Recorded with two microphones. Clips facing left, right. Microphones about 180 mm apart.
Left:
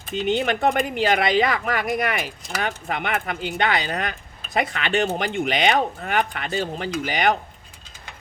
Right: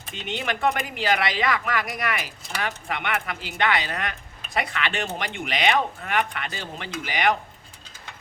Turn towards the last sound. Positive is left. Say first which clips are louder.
# left 3 dB
turn(degrees=35)  # may be behind; listen again after turning